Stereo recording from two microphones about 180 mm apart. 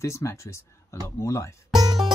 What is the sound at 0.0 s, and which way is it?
Speech, 15° left (ahead or behind).